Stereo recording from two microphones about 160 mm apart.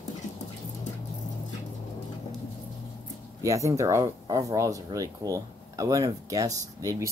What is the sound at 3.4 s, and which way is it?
Speech, 20° right (ahead or behind).